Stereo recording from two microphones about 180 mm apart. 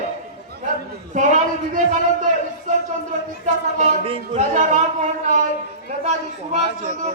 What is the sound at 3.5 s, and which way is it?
Speech, 45° right (ahead or behind).